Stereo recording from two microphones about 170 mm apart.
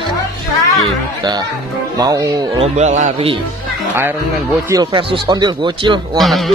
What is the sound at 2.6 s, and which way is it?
Speech, 45° right (ahead or behind).